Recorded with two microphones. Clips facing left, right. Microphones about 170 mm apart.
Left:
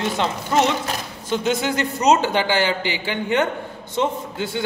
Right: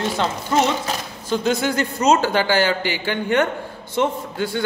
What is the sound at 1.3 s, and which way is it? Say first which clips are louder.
A woman's voice: right 1 dB; 20° left (ahead or behind).